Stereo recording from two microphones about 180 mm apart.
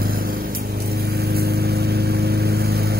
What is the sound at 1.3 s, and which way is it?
Vehicle, 60° right (ahead or behind).